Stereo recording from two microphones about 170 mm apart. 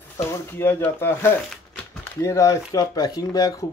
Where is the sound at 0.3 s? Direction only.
15° left (ahead or behind).